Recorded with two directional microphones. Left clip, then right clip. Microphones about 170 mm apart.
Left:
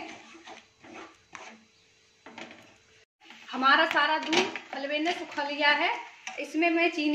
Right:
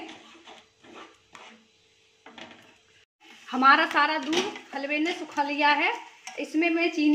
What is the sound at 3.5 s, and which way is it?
A woman's voice, 45° right (ahead or behind).